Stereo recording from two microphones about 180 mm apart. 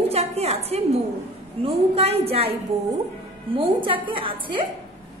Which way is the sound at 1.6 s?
35° right (ahead or behind).